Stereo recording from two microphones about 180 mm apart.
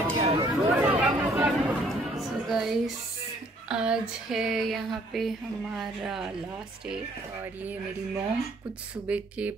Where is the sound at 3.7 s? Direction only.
5° right (ahead or behind).